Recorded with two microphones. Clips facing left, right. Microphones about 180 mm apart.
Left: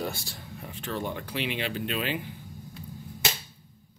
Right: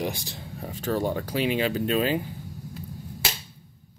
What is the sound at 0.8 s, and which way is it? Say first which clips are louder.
Speech: right 7 dB; 40° right (ahead or behind).